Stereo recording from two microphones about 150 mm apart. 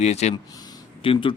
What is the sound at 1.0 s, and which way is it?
Speech, 35° left (ahead or behind).